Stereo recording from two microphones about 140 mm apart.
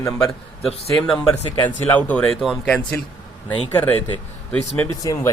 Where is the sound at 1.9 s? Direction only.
10° left (ahead or behind).